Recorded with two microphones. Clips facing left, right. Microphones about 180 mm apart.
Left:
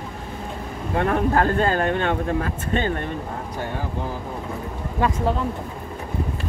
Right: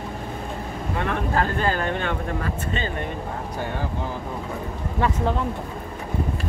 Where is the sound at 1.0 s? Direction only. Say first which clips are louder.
Left 5 dB; 45° left (ahead or behind).